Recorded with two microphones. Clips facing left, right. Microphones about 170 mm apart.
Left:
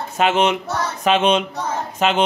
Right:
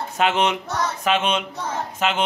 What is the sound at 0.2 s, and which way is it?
A man's voice, 20° left (ahead or behind).